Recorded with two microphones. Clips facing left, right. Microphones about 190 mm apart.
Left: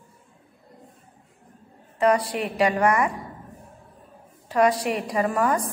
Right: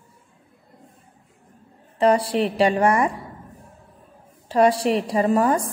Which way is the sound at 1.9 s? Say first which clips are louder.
Right 3 dB; 30° right (ahead or behind).